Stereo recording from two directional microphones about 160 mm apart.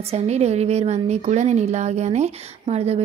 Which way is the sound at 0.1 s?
40° right (ahead or behind).